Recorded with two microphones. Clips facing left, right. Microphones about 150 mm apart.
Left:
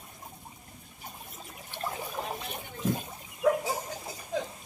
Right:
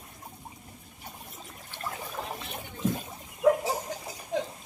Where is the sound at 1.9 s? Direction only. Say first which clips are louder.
Left 1 dB; centre (ahead or behind).